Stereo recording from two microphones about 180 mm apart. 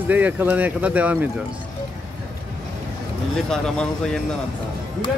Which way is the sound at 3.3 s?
5° left (ahead or behind).